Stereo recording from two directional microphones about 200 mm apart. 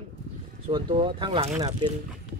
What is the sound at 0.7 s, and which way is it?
Speech, 25° right (ahead or behind).